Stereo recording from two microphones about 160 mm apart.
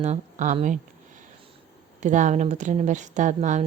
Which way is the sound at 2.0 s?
50° right (ahead or behind).